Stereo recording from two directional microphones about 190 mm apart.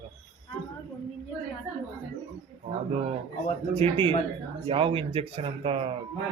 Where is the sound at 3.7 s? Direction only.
30° right (ahead or behind).